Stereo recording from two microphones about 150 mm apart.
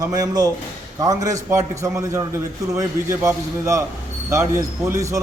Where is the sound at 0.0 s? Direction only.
25° right (ahead or behind).